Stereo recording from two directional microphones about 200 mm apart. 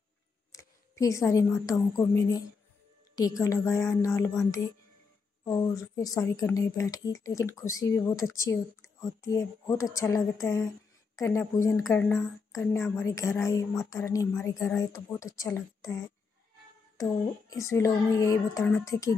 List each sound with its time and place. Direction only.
0.5 s a woman's voice: 15° left (ahead or behind)